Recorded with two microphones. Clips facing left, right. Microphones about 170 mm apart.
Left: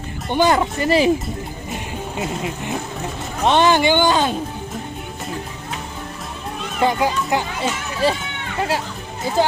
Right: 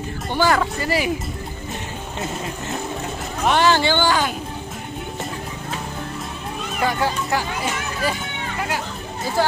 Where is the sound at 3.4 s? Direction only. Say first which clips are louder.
Left 3 dB; 20° left (ahead or behind).